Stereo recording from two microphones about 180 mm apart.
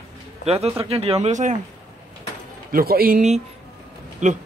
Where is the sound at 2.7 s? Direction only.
55° right (ahead or behind).